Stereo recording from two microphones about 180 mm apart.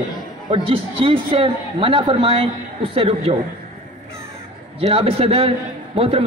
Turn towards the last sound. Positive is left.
turn(degrees=-30)  # may be behind; listen again after turning